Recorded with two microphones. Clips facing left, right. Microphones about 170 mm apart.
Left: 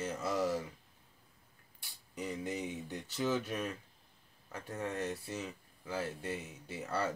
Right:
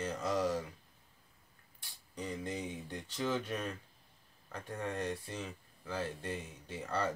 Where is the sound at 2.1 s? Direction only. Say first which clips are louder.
Left 1 dB; 10° left (ahead or behind).